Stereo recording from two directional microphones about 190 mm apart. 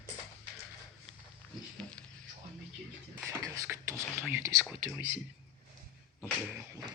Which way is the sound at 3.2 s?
15° right (ahead or behind).